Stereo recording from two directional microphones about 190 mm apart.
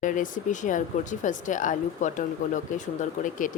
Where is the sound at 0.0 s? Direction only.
45° left (ahead or behind).